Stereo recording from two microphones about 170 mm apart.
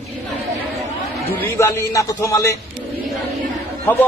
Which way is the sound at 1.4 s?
15° left (ahead or behind).